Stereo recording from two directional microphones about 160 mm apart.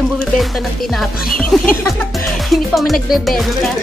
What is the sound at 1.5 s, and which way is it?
Music, centre (ahead or behind).